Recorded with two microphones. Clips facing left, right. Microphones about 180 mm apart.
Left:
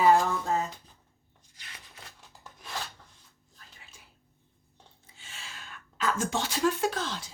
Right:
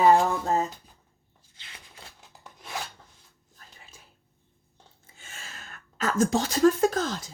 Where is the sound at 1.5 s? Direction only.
25° right (ahead or behind).